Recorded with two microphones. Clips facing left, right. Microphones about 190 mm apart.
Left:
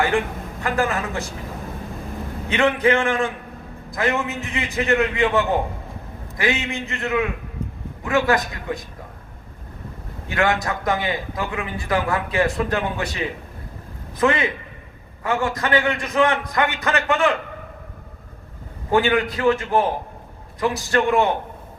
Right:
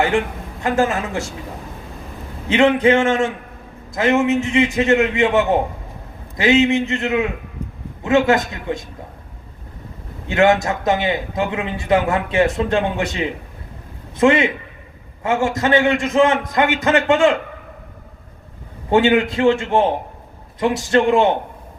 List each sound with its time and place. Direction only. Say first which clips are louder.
0.6 s a man's voice: right 4 dB; 25° right (ahead or behind)
2.5 s a man's voice: right 5 dB; 25° right (ahead or behind)
10.2 s a man's voice: right 6 dB; 25° right (ahead or behind)
18.9 s a man's voice: right 4 dB; 25° right (ahead or behind)